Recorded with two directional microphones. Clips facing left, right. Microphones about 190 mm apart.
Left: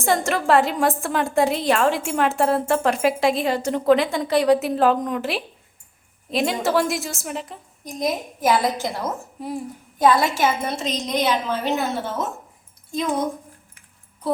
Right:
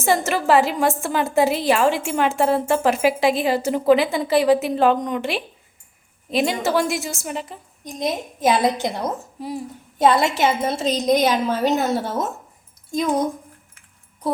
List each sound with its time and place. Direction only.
0.0 s a woman's voice: 5° right (ahead or behind)
7.9 s a woman's voice: 25° right (ahead or behind)
9.4 s a woman's voice: centre (ahead or behind)
10.0 s a woman's voice: 25° right (ahead or behind); by 11.7 s 45° right (ahead or behind)